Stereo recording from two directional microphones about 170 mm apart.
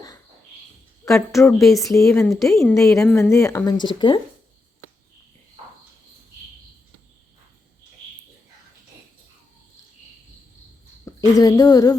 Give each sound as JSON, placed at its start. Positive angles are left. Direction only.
{"t": 1.0, "sound": "a woman's voice", "side_deg": 15}
{"t": 1.6, "sound": "speech", "side_deg": 0}
{"t": 2.1, "sound": "a woman's voice", "side_deg": 15}
{"t": 11.0, "sound": "a woman's voice", "side_deg": 20}